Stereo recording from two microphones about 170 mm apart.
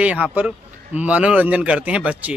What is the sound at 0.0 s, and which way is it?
A man's voice, 10° right (ahead or behind).